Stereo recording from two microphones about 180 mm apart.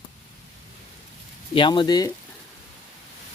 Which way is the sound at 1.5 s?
25° left (ahead or behind).